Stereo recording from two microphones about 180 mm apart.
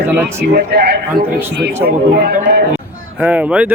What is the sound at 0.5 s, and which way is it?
A man's voice, 65° right (ahead or behind).